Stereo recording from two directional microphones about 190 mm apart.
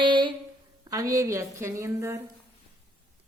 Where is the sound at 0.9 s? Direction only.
20° right (ahead or behind).